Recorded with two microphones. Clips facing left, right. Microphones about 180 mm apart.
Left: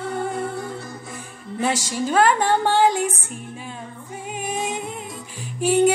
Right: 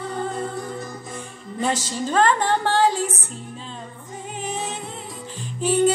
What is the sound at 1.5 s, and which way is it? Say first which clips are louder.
Music: left 1 dB; 10° left (ahead or behind).